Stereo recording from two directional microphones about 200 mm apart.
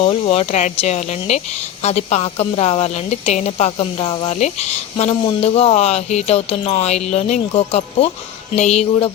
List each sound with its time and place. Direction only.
0.0 s speech: 30° left (ahead or behind)